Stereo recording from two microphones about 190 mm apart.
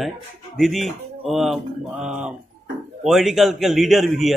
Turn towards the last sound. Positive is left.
turn(degrees=0)  # may be behind; listen again after turning